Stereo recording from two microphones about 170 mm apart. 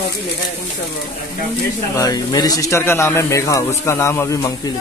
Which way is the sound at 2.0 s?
20° left (ahead or behind).